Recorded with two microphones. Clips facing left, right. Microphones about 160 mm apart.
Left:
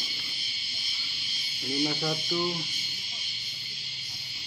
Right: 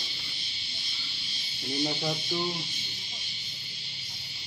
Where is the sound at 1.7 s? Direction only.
35° right (ahead or behind).